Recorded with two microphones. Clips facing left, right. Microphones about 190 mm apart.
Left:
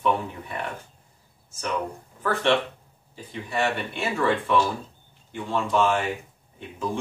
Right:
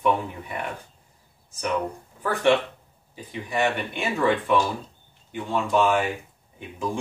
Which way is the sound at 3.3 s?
15° right (ahead or behind).